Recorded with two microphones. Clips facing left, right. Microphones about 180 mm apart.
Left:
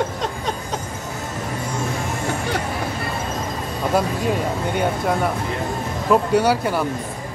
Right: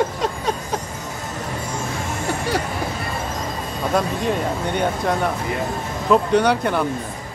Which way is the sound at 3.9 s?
5° left (ahead or behind).